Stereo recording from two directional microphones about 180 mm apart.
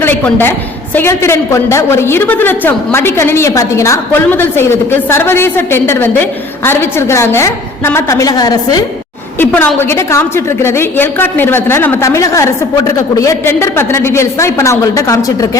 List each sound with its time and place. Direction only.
0.0 s a woman's voice: 10° left (ahead or behind)
9.4 s a woman's voice: 10° left (ahead or behind)